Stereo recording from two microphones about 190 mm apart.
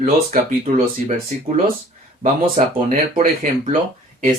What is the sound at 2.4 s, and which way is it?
Speech, 50° right (ahead or behind).